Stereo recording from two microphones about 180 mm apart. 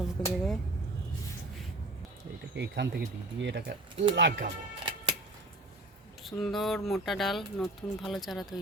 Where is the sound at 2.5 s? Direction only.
75° right (ahead or behind).